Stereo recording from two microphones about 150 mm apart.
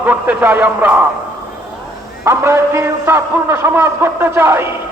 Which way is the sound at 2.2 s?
15° right (ahead or behind).